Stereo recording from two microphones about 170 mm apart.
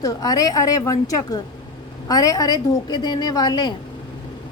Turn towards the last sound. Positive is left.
turn(degrees=25)  # may be behind; listen again after turning